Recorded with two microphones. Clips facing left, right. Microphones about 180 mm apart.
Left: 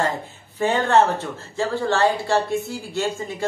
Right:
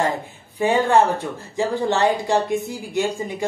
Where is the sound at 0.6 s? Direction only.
10° right (ahead or behind).